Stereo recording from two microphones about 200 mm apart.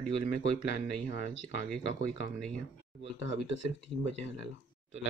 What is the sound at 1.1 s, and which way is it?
Speech, 60° left (ahead or behind).